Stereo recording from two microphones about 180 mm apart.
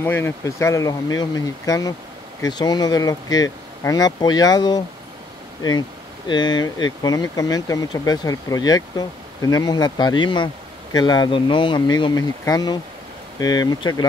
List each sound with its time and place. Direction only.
0.0 s speech: 10° left (ahead or behind)